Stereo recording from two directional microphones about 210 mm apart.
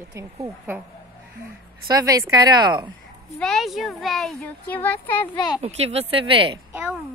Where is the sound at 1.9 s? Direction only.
15° right (ahead or behind).